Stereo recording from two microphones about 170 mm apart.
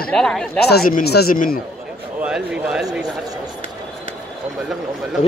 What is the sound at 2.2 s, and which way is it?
Speech, 5° right (ahead or behind).